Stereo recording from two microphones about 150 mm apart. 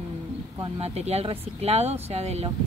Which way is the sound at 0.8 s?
45° right (ahead or behind).